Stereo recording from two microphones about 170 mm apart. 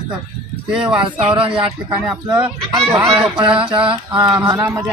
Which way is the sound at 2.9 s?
25° right (ahead or behind).